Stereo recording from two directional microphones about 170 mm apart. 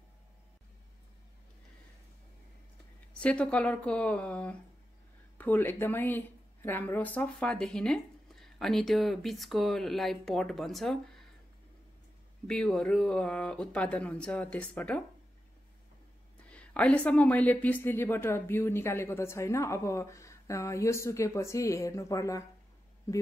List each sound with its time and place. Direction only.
3.1 s speech: 5° left (ahead or behind)
12.4 s speech: 5° left (ahead or behind)
16.4 s speech: 5° left (ahead or behind)